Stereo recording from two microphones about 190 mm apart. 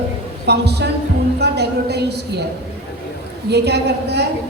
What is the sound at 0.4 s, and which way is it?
A woman's voice, 60° right (ahead or behind).